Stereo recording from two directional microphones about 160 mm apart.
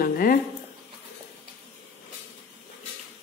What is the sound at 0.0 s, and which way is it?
Speech, 65° left (ahead or behind).